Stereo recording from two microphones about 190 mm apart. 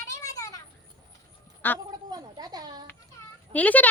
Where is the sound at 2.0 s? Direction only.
20° right (ahead or behind).